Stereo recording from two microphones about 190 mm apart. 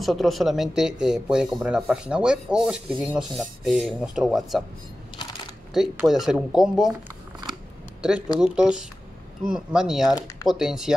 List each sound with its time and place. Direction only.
0.0 s speech: centre (ahead or behind)
5.7 s speech: centre (ahead or behind)
8.4 s speech: 5° right (ahead or behind)
10.1 s speech: 20° left (ahead or behind)
10.5 s speech: centre (ahead or behind)